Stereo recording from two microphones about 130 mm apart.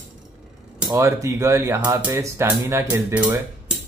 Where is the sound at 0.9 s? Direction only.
25° right (ahead or behind).